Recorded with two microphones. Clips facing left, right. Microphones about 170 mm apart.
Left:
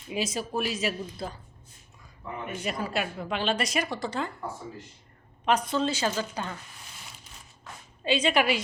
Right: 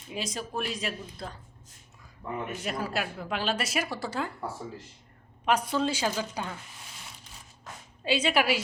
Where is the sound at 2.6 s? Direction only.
Centre (ahead or behind).